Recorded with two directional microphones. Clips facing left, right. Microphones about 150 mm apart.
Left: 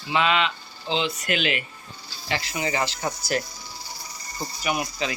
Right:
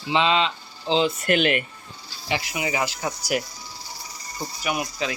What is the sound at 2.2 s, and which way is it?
Speech, 15° right (ahead or behind).